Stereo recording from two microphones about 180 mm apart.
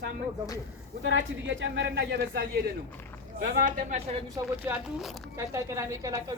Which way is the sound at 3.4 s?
50° right (ahead or behind).